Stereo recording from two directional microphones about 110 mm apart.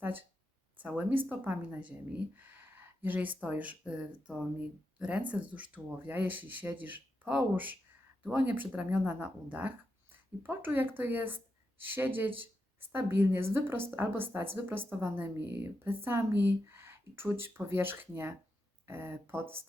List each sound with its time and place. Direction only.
0.0 s a woman's voice: 20° right (ahead or behind)